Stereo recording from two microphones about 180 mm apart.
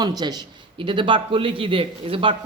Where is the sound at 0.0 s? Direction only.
20° right (ahead or behind).